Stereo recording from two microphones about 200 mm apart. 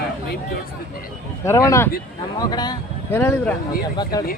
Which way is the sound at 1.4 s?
15° left (ahead or behind).